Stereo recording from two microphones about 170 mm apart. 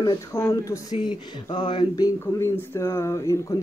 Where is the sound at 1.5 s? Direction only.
25° left (ahead or behind).